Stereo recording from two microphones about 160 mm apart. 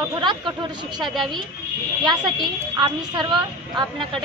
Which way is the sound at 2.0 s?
30° right (ahead or behind).